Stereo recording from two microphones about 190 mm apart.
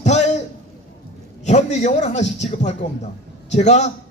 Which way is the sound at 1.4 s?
35° left (ahead or behind).